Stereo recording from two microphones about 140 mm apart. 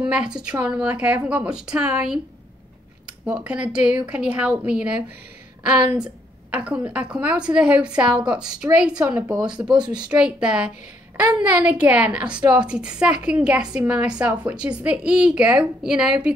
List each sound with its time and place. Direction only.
0.1 s a woman's voice: 5° right (ahead or behind)
6.5 s a woman's voice: 10° right (ahead or behind)
9.7 s speech: 30° right (ahead or behind)
9.9 s a woman's voice: 5° right (ahead or behind)